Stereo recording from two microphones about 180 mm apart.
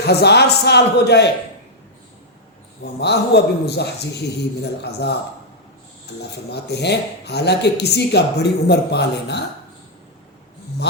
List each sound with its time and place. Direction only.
0.0 s speech: 65° left (ahead or behind)
3.0 s speech: 65° left (ahead or behind)
6.3 s speech: 65° left (ahead or behind)